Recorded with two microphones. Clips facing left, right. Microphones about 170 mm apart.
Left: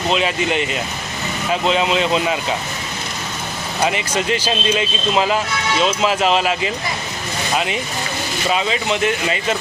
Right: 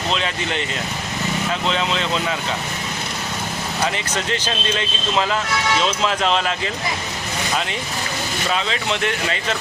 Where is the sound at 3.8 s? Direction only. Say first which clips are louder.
Left 5 dB; 15° left (ahead or behind).